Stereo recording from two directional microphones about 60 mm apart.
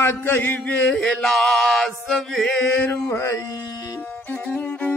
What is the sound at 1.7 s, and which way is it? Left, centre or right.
Music, centre.